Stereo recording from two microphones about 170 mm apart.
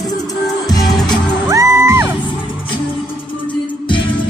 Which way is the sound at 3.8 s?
30° left (ahead or behind).